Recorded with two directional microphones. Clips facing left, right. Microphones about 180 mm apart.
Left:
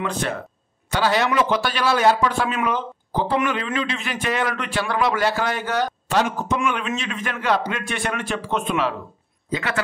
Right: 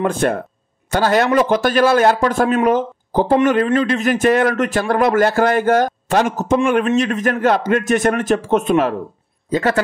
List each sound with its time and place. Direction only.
0.0 s a man's voice: 50° right (ahead or behind)